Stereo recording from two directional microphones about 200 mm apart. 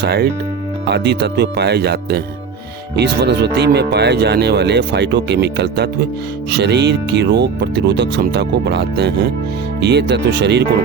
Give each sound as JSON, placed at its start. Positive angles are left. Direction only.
{"t": 0.0, "sound": "speech", "side_deg": -55}